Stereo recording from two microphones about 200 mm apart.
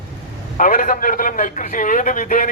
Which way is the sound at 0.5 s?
40° left (ahead or behind).